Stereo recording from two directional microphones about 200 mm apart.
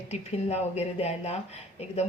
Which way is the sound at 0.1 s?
30° left (ahead or behind).